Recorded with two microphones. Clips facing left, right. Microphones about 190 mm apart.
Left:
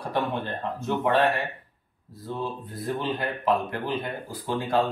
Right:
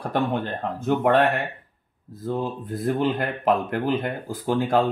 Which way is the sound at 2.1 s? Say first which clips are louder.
Right 5 dB; 45° right (ahead or behind).